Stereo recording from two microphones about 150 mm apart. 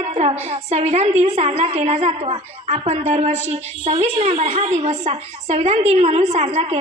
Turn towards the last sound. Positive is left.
turn(degrees=-45)  # may be behind; listen again after turning